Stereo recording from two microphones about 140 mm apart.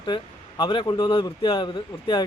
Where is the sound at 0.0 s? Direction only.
35° left (ahead or behind).